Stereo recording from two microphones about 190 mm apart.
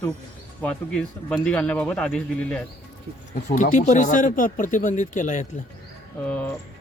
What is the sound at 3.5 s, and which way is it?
Speech, 40° left (ahead or behind).